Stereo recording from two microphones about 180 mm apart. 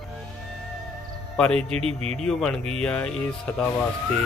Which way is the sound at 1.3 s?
5° left (ahead or behind).